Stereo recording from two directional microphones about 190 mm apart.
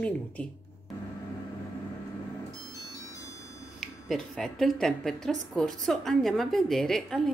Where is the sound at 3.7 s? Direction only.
Centre (ahead or behind).